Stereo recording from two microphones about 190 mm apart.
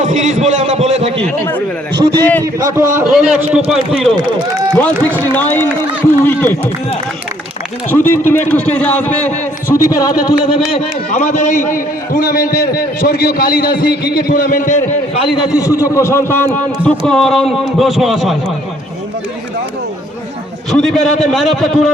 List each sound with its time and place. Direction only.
0.0 s a sound: 40° right (ahead or behind)
1.2 s a man's voice: 10° left (ahead or behind)
2.0 s a man's voice: 20° right (ahead or behind)
3.2 s a man's voice: 5° right (ahead or behind)
5.0 s a man's voice: 10° left (ahead or behind)
7.9 s a man's voice: 10° left (ahead or behind)
11.1 s a man's voice: 40° left (ahead or behind)
15.4 s a man's voice: 15° left (ahead or behind); by 18.3 s centre (ahead or behind)
20.7 s a man's voice: 5° left (ahead or behind)